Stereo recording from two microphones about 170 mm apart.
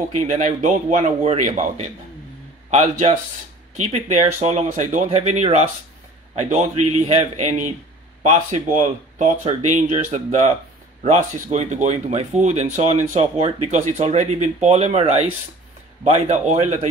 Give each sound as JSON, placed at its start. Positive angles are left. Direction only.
{"t": 0.3, "sound": "speech", "side_deg": -45}